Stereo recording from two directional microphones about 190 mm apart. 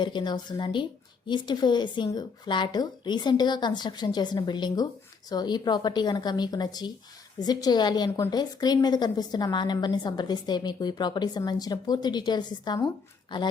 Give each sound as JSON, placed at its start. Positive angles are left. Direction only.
{"t": 0.0, "sound": "a woman's voice", "side_deg": 25}